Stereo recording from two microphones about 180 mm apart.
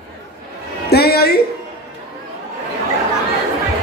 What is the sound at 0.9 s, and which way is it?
Speech, 60° left (ahead or behind).